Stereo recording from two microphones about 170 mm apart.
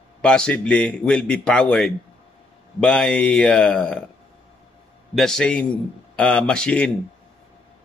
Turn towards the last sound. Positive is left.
turn(degrees=5)  # may be behind; listen again after turning